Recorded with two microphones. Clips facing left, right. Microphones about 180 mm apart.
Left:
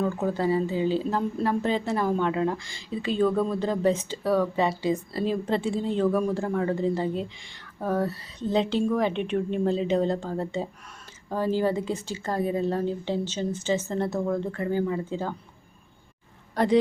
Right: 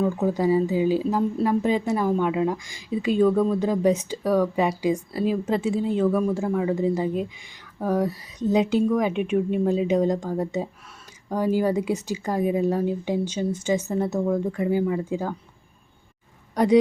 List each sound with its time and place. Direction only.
0.0 s speech: 10° right (ahead or behind)
4.2 s speech: centre (ahead or behind)